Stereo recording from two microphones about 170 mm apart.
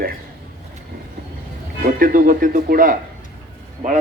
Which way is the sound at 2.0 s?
55° right (ahead or behind).